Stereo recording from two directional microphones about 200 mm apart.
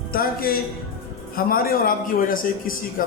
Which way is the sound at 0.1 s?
50° left (ahead or behind).